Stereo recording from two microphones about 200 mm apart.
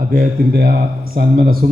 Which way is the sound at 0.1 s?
50° right (ahead or behind).